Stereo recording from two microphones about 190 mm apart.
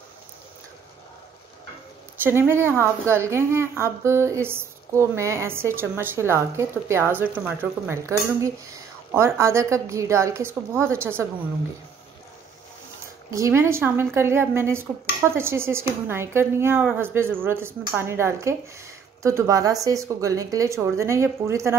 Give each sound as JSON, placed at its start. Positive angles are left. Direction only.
{"t": 2.2, "sound": "speech", "side_deg": -10}
{"t": 13.3, "sound": "speech", "side_deg": -15}